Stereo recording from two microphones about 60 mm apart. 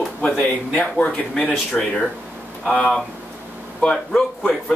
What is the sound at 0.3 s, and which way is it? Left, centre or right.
Speech, centre.